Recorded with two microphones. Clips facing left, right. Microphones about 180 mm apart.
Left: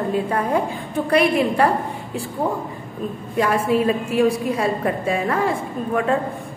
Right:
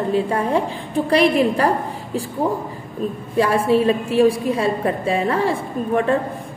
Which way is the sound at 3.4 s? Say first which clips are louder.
Right 2 dB; 30° right (ahead or behind).